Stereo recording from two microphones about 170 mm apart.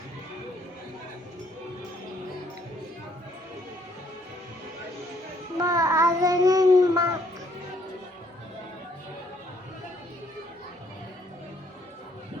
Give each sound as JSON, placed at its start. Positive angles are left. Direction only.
{"t": 5.5, "sound": "child singing", "side_deg": -20}